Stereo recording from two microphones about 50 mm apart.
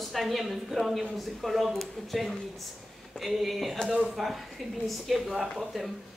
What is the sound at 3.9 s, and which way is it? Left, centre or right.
Speech, right.